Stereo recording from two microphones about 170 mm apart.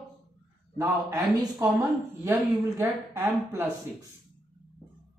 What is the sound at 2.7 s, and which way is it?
Speech, 15° right (ahead or behind).